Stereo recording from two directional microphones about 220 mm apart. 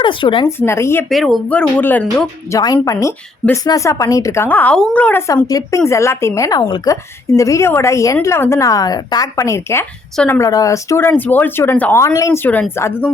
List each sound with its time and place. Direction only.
0.0 s speech: 20° left (ahead or behind)
0.6 s a woman's voice: 10° left (ahead or behind)
1.1 s a woman's voice: centre (ahead or behind)